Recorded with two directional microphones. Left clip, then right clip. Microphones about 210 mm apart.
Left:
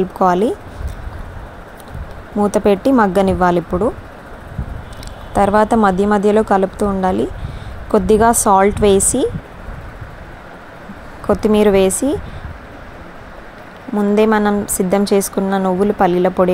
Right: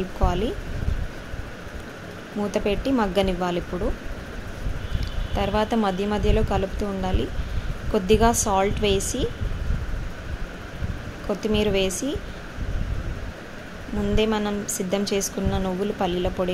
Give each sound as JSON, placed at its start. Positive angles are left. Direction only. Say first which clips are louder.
{"t": 0.2, "sound": "a woman's voice", "louder": "left 12 dB", "side_deg": 40}
{"t": 2.4, "sound": "a woman's voice", "louder": "left 11 dB", "side_deg": 35}
{"t": 5.3, "sound": "a woman's voice", "louder": "left 11 dB", "side_deg": 35}
{"t": 11.2, "sound": "a woman's voice", "louder": "left 11 dB", "side_deg": 35}
{"t": 14.1, "sound": "a woman's voice", "louder": "left 10 dB", "side_deg": 35}